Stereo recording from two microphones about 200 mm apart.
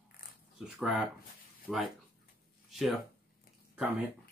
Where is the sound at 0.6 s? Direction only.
Centre (ahead or behind).